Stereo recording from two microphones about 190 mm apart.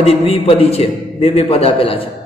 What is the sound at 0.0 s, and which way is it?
A man's voice, 30° left (ahead or behind).